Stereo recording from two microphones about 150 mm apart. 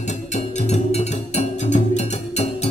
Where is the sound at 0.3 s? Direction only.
50° left (ahead or behind).